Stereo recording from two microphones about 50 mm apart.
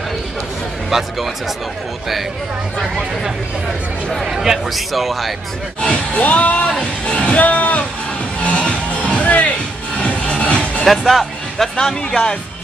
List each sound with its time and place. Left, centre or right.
0.8 s speech: centre
4.3 s a man's voice: centre
5.8 s speech: left
6.7 s speech: centre
7.2 s speech: left
8.4 s music: left
10.9 s speech: centre
11.7 s speech: centre